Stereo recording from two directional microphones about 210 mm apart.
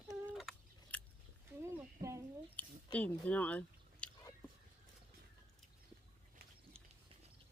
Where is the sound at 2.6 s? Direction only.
5° left (ahead or behind).